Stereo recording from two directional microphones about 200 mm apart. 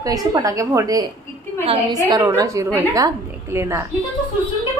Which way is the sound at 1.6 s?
30° right (ahead or behind).